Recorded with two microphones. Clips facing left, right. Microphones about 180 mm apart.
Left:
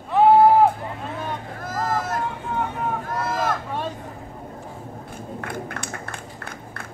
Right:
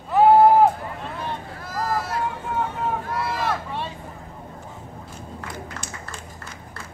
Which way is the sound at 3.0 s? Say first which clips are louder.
Left 1 dB; 45° left (ahead or behind).